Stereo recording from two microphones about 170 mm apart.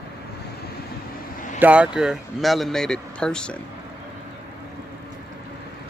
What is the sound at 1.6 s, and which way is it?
Speech, 5° right (ahead or behind).